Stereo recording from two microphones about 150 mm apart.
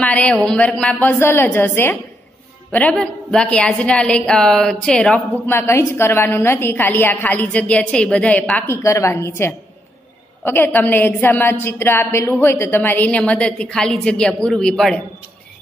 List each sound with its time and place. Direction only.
0.0 s a woman's voice: 10° left (ahead or behind)